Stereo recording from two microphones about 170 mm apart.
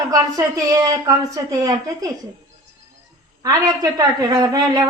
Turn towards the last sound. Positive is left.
turn(degrees=-25)  # may be behind; listen again after turning